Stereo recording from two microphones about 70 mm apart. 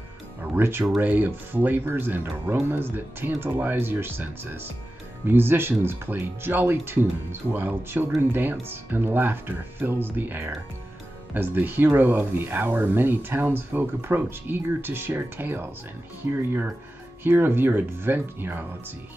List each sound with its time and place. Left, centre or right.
0.4 s music: right
1.0 s speech: right
17.2 s speech: right